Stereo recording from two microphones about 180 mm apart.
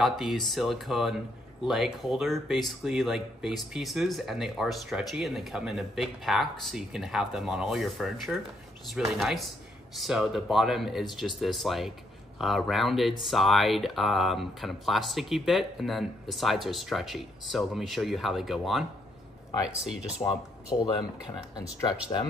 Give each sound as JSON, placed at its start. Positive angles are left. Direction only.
{"t": 0.0, "sound": "speech", "side_deg": 0}
{"t": 20.7, "sound": "speech", "side_deg": 30}